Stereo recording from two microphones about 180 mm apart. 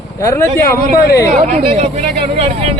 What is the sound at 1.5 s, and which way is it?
Speech, 35° right (ahead or behind).